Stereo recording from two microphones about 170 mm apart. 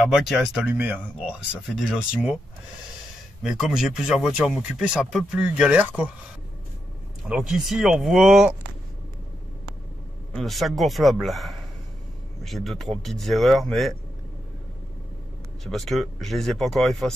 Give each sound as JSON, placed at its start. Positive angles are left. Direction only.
{"t": 0.0, "sound": "speech", "side_deg": -5}
{"t": 3.4, "sound": "speech", "side_deg": 0}
{"t": 7.2, "sound": "speech", "side_deg": 0}
{"t": 10.3, "sound": "speech", "side_deg": 0}
{"t": 15.6, "sound": "speech", "side_deg": 0}